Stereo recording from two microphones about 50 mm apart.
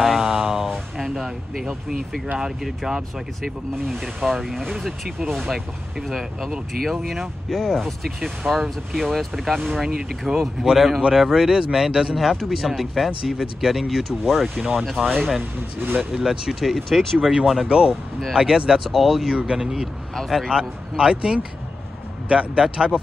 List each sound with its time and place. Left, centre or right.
0.0 s a sound: centre
2.3 s speech: centre
17.6 s speech: centre
18.9 s speech: centre
19.3 s speech: centre
19.6 s speech: centre
20.4 s speech: centre